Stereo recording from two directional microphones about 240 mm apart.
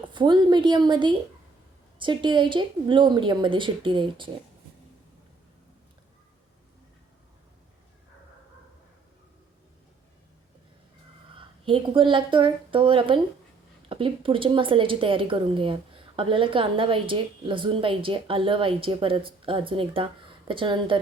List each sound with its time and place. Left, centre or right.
0.1 s speech: centre
11.3 s a woman's voice: right